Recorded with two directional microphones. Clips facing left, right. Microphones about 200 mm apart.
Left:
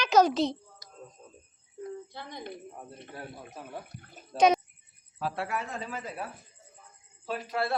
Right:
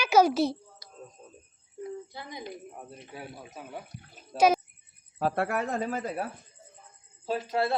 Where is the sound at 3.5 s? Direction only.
Centre (ahead or behind).